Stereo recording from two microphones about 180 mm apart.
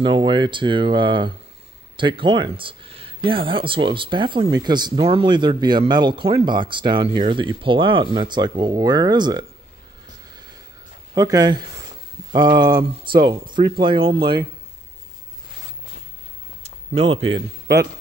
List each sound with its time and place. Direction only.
0.0 s speech: 25° right (ahead or behind)
11.1 s speech: 20° right (ahead or behind)
16.6 s a sound: 35° right (ahead or behind)